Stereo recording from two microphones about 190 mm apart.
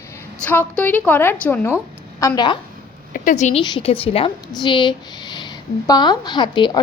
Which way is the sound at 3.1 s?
45° left (ahead or behind).